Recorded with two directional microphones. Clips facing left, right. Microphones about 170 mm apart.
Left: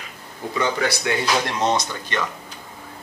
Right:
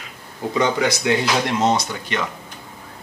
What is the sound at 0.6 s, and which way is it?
Speech, 20° right (ahead or behind).